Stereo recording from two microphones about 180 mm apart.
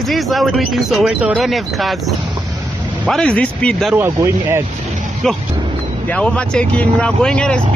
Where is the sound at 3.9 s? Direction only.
15° right (ahead or behind).